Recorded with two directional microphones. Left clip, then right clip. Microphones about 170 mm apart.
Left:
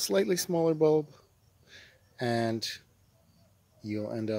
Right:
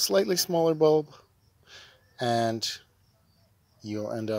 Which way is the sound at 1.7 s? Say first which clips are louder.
Right 4 dB; 10° left (ahead or behind).